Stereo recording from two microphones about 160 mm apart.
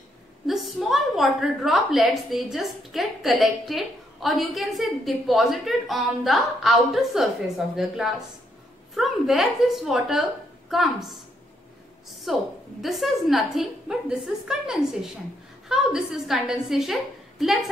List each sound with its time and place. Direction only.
0.5 s a woman's voice: centre (ahead or behind)
12.3 s a woman's voice: centre (ahead or behind)